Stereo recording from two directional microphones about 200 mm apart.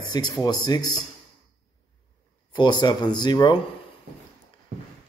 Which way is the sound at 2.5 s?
20° left (ahead or behind).